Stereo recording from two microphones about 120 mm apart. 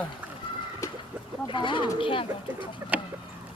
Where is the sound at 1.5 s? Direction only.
45° left (ahead or behind).